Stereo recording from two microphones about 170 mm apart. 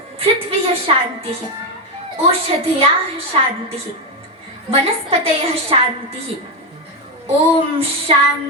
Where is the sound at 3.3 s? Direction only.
30° right (ahead or behind).